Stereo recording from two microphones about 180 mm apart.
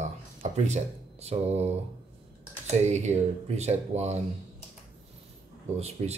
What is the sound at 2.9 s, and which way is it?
Speech, 40° right (ahead or behind).